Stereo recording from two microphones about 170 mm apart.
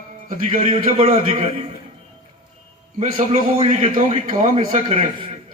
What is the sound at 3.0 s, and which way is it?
A man's voice, 40° right (ahead or behind).